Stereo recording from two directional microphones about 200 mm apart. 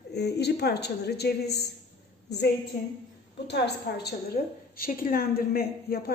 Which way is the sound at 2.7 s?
50° left (ahead or behind).